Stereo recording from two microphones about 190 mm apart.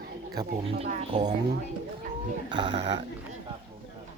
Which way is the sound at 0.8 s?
35° right (ahead or behind).